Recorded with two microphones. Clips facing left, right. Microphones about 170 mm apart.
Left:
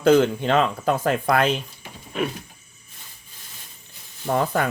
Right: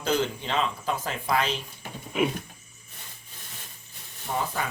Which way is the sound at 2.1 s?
10° right (ahead or behind).